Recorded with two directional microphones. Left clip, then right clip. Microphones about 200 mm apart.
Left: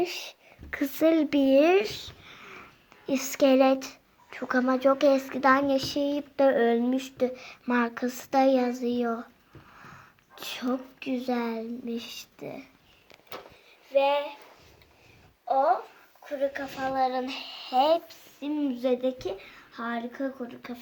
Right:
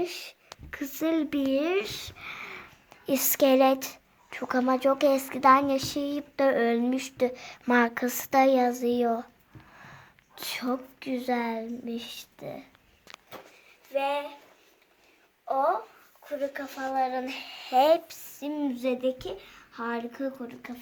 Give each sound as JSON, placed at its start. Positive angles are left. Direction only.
{"t": 0.0, "sound": "speech", "side_deg": 15}
{"t": 2.2, "sound": "speech", "side_deg": -25}
{"t": 13.9, "sound": "speech", "side_deg": -15}
{"t": 16.4, "sound": "speech", "side_deg": 0}
{"t": 17.0, "sound": "speech", "side_deg": -10}
{"t": 19.7, "sound": "speech", "side_deg": -10}